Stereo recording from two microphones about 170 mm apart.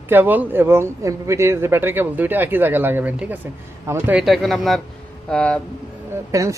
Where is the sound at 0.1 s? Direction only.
10° right (ahead or behind); by 5.5 s 5° left (ahead or behind).